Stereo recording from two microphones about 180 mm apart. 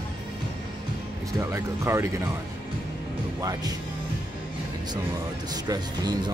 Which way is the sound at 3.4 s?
20° right (ahead or behind).